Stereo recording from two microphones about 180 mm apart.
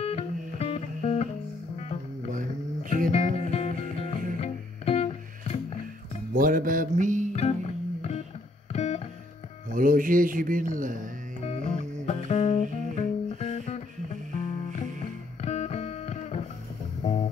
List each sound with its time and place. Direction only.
0.0 s music: 35° left (ahead or behind)
3.1 s music: 40° left (ahead or behind)
6.3 s mantra: 50° right (ahead or behind)
7.3 s music: 35° left (ahead or behind)
9.7 s speech: 50° right (ahead or behind)
11.4 s music: 35° left (ahead or behind)